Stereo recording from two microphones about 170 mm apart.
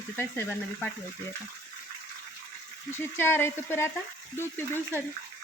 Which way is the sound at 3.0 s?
15° left (ahead or behind).